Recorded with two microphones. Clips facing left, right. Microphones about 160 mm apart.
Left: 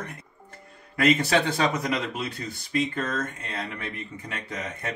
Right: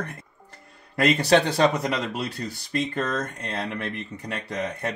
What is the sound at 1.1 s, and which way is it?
Speech, 35° right (ahead or behind).